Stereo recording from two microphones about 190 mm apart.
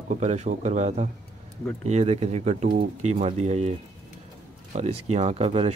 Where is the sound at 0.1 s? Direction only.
35° right (ahead or behind).